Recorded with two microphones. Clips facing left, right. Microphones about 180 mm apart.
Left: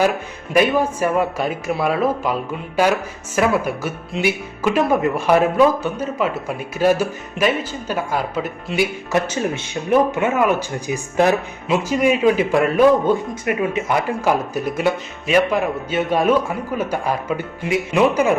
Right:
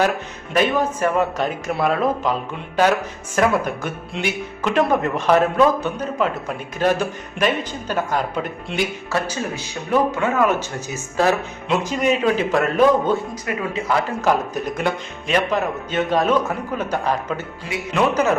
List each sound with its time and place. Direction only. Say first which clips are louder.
0.5 s speech: left 2 dB; 10° left (ahead or behind)
9.1 s speech: left 4 dB; 25° left (ahead or behind)
13.3 s speech: left 4 dB; 25° left (ahead or behind)
14.2 s speech: left 1 dB; 10° left (ahead or behind)